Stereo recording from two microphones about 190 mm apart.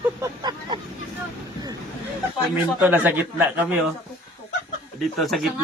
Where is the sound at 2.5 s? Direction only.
10° right (ahead or behind).